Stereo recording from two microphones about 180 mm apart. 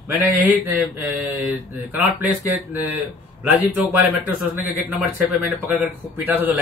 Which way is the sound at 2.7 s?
10° right (ahead or behind).